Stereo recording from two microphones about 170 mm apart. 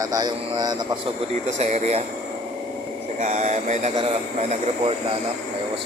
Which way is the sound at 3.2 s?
45° right (ahead or behind).